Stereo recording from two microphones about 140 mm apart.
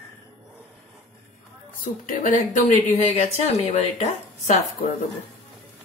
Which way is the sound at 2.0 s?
75° left (ahead or behind).